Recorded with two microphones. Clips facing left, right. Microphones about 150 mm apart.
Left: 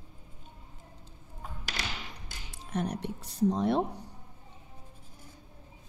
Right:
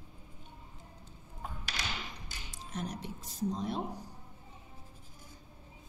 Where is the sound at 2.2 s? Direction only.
60° left (ahead or behind).